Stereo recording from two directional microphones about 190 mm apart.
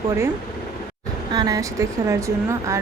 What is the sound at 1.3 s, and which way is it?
Speech, 20° right (ahead or behind).